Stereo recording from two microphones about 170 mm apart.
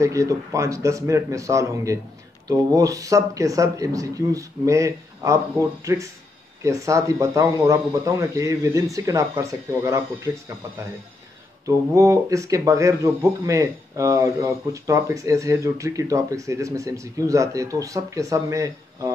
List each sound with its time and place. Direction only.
0.0 s speech: 20° right (ahead or behind)
11.6 s speech: 20° right (ahead or behind)